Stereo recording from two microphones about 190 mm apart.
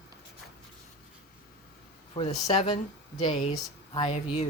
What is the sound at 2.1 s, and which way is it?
Speech, 35° left (ahead or behind).